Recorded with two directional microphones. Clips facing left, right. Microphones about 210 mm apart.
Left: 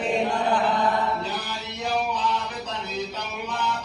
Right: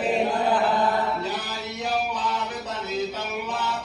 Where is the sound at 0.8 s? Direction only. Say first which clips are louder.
Even; 40° right (ahead or behind).